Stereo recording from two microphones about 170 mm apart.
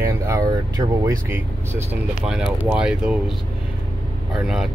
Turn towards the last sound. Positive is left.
turn(degrees=-5)  # may be behind; listen again after turning